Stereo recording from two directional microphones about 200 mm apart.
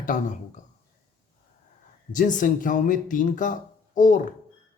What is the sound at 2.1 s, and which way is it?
Speech, 40° left (ahead or behind).